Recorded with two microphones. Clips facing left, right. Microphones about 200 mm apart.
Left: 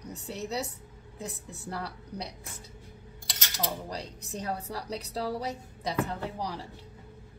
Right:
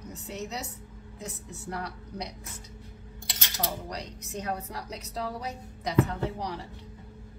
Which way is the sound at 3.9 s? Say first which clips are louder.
Even; 30° left (ahead or behind).